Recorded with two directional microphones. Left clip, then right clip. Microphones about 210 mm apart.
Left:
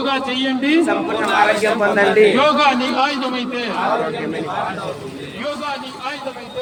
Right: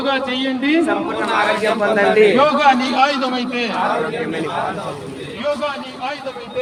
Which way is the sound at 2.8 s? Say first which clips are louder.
Right 2 dB; 30° right (ahead or behind).